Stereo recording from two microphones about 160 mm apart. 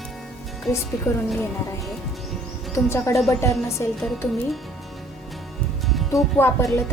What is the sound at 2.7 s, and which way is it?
A woman's voice, 20° left (ahead or behind).